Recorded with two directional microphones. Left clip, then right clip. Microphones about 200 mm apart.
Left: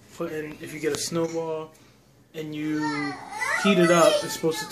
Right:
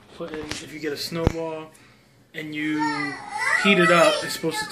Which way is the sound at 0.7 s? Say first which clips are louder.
Left 3 dB; 15° left (ahead or behind).